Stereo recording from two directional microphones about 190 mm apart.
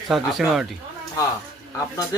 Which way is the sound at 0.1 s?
Centre (ahead or behind).